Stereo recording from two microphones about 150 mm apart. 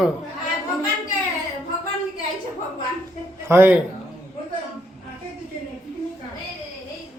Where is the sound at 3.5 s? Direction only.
10° right (ahead or behind).